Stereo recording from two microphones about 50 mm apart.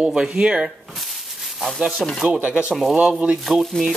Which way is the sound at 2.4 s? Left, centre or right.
Right.